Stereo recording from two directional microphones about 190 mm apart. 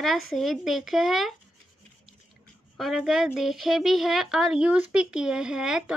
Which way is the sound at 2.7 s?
Centre (ahead or behind).